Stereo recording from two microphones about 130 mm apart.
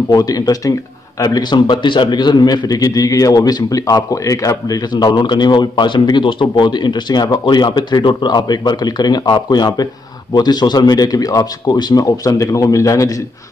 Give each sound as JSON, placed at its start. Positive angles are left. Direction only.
{"t": 0.1, "sound": "a man's voice", "side_deg": 30}